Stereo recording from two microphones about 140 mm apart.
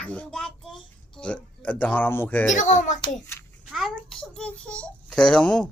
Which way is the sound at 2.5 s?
60° left (ahead or behind).